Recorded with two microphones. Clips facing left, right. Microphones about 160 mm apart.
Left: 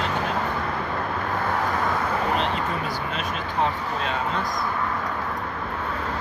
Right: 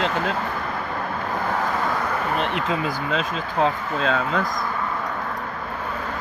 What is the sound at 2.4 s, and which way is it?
Speech, 70° right (ahead or behind).